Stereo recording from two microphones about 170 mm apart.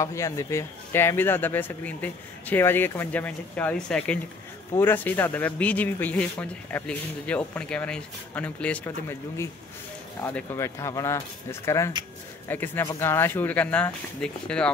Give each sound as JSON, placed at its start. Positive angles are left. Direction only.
{"t": 0.0, "sound": "speech", "side_deg": 15}
{"t": 10.2, "sound": "speech", "side_deg": 15}